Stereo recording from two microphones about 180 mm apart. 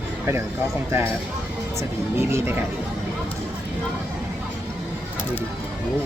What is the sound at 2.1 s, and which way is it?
Speech, 15° right (ahead or behind).